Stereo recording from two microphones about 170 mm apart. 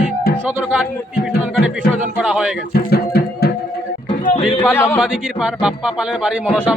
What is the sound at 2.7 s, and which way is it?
Music, 65° left (ahead or behind).